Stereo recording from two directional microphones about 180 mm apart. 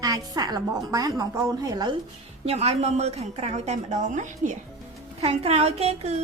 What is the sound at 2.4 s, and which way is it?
Speech, 35° right (ahead or behind).